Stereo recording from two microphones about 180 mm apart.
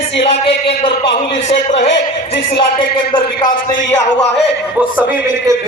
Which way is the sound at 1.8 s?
80° left.